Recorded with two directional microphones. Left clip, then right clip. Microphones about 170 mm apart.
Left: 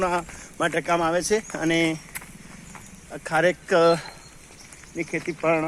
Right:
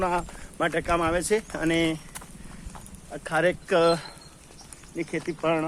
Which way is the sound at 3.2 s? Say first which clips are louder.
Left 3 dB; 60° left (ahead or behind).